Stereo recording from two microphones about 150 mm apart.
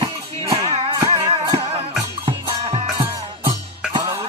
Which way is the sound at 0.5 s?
40° right (ahead or behind).